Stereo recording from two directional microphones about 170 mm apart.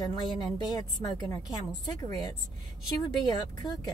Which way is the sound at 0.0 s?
25° left (ahead or behind).